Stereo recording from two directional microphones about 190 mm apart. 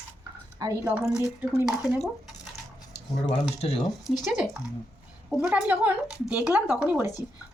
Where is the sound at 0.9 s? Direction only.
5° right (ahead or behind).